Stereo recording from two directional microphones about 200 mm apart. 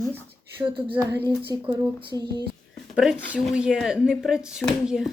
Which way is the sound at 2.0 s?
25° right (ahead or behind).